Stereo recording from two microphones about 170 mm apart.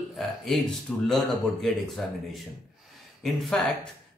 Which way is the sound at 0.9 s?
5° left (ahead or behind).